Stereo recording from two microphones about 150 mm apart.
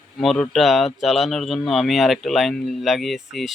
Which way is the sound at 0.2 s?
Centre (ahead or behind).